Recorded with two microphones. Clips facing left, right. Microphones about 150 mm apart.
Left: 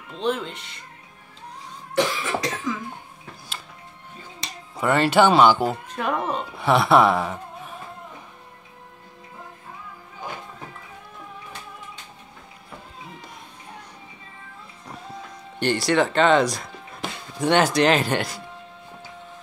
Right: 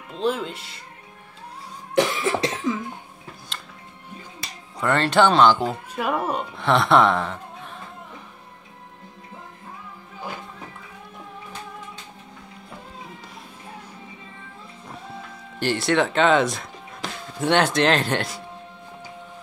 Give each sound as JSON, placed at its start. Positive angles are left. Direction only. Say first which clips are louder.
{"t": 0.2, "sound": "speech", "louder": "right 1 dB", "side_deg": -5}
{"t": 2.0, "sound": "cough", "louder": "right 3 dB", "side_deg": -25}
{"t": 4.7, "sound": "speech", "louder": "left 1 dB", "side_deg": 5}
{"t": 5.9, "sound": "speech", "louder": "right 1 dB", "side_deg": -5}
{"t": 6.5, "sound": "music", "louder": "left 1 dB", "side_deg": 5}
{"t": 15.6, "sound": "speech", "louder": "left 1 dB", "side_deg": 0}